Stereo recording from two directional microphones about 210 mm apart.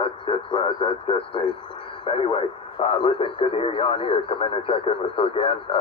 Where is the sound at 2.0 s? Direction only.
25° left (ahead or behind).